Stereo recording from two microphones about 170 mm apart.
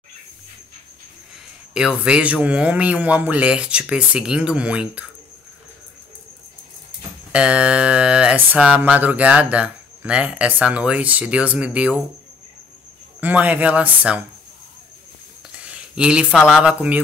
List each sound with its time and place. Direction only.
1.7 s speech: 5° right (ahead or behind)
7.3 s speech: 5° right (ahead or behind)
13.2 s speech: 10° right (ahead or behind)
15.5 s speech: 5° right (ahead or behind)